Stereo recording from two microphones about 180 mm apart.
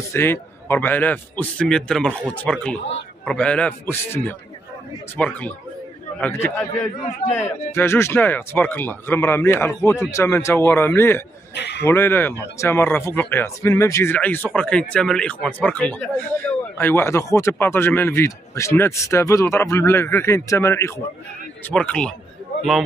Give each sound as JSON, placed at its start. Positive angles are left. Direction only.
{"t": 0.1, "sound": "speech", "side_deg": 15}
{"t": 11.5, "sound": "a man's voice", "side_deg": 70}
{"t": 11.8, "sound": "speech", "side_deg": 15}